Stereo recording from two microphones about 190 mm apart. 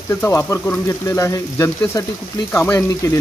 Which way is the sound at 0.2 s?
15° left (ahead or behind).